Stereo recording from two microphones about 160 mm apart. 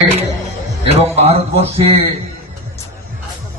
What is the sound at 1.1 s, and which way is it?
Speech, 40° right (ahead or behind).